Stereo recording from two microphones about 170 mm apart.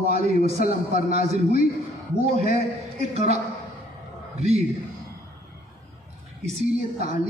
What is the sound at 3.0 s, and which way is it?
Speech, 40° right (ahead or behind).